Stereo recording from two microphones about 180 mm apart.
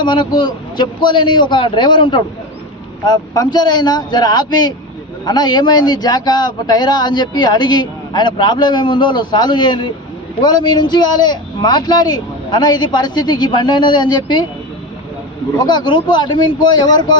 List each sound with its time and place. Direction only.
0.0 s a man's voice: 25° left (ahead or behind)
15.5 s a man's voice: 25° left (ahead or behind)